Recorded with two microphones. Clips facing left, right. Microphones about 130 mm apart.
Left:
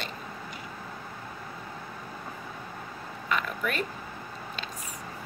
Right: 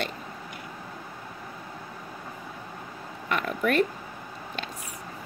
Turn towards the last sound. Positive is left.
turn(degrees=-50)  # may be behind; listen again after turning